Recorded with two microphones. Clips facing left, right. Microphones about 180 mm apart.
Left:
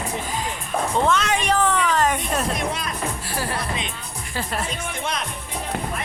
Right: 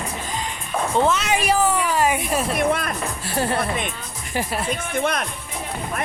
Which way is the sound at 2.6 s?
55° right (ahead or behind).